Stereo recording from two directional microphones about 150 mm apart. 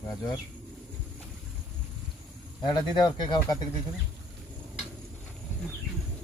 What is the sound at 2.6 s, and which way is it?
Speech, 30° left (ahead or behind).